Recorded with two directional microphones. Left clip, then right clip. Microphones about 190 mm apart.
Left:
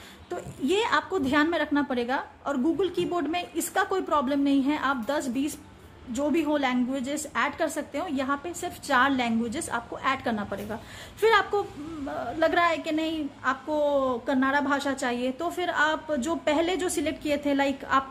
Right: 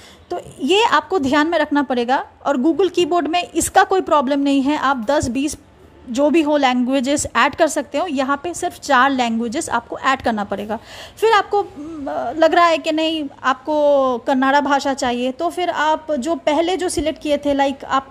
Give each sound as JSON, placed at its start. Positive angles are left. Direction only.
{"t": 0.7, "sound": "a woman's voice", "side_deg": -40}